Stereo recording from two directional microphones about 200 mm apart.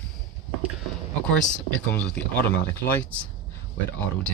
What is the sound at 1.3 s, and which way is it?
Speech, 5° left (ahead or behind).